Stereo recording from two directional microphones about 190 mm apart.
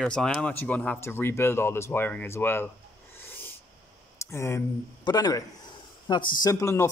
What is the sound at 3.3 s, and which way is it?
Owl, 10° left (ahead or behind).